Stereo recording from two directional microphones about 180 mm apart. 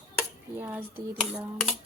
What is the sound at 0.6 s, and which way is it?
Speech, 10° right (ahead or behind).